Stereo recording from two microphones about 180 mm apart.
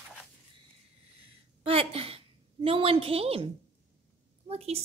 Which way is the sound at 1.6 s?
30° right (ahead or behind).